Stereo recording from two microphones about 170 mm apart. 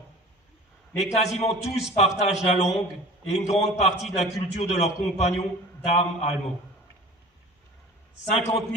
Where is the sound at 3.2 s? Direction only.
40° left (ahead or behind).